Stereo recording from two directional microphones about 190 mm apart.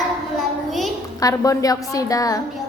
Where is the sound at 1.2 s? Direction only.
20° left (ahead or behind).